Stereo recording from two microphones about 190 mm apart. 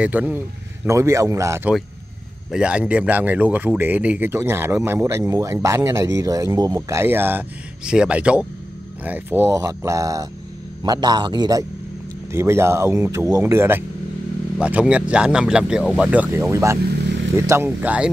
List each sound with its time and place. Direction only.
0.0 s a man's voice: 10° right (ahead or behind)